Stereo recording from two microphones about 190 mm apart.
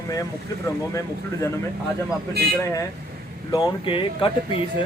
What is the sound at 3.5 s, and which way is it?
Speech, 25° left (ahead or behind).